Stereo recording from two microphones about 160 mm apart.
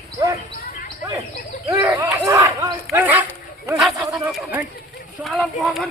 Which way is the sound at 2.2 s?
20° right (ahead or behind).